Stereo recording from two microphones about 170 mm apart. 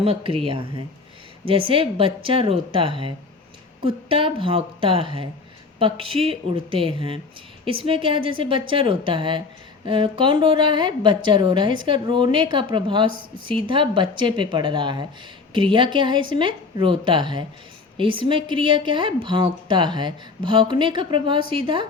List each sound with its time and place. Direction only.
0.0 s a woman's voice: 35° right (ahead or behind)